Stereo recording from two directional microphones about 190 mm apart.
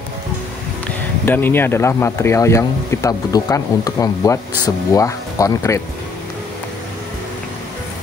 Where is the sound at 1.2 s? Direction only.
10° left (ahead or behind).